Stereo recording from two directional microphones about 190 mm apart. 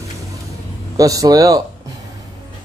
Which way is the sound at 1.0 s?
20° right (ahead or behind).